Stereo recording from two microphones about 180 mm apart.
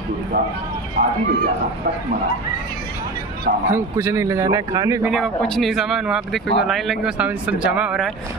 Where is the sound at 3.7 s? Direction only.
15° right (ahead or behind).